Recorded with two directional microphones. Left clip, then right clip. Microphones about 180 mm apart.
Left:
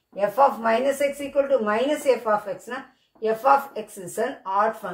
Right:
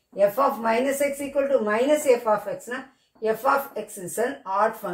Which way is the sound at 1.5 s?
Centre (ahead or behind).